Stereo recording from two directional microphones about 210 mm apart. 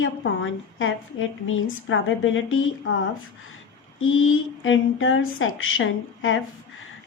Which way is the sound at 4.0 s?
70° left (ahead or behind).